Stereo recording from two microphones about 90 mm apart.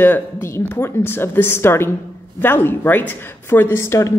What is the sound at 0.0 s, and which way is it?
A woman's voice, 25° left (ahead or behind).